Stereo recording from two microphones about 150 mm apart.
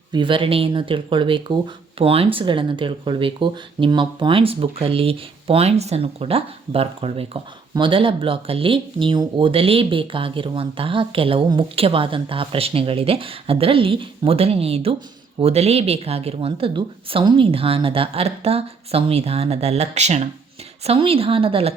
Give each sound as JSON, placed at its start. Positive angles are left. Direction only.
{"t": 0.1, "sound": "speech", "side_deg": -35}